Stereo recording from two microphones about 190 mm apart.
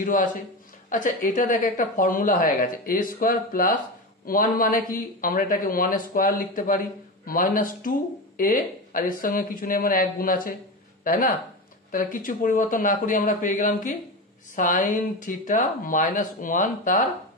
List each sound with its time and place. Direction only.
0.0 s a woman's voice: 45° left (ahead or behind)